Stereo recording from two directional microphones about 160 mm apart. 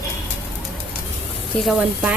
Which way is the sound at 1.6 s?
5° right (ahead or behind).